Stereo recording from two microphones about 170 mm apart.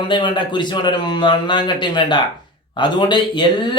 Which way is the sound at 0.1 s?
25° left (ahead or behind).